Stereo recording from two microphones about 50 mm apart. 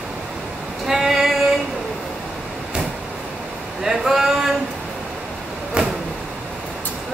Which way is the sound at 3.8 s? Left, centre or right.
Centre.